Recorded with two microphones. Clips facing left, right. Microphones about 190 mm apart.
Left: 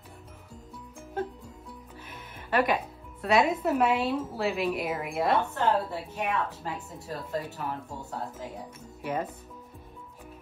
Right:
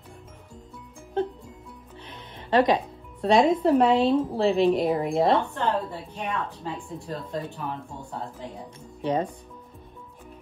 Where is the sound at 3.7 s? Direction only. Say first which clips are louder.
Right 5 dB; 25° right (ahead or behind).